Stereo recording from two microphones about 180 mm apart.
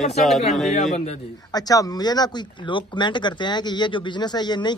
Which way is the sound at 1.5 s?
20° left (ahead or behind).